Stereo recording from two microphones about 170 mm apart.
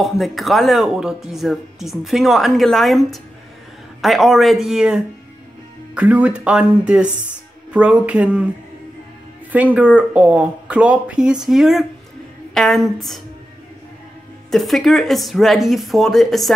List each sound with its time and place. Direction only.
0.0 s speech: centre (ahead or behind)
9.5 s speech: 10° right (ahead or behind)
14.5 s speech: centre (ahead or behind)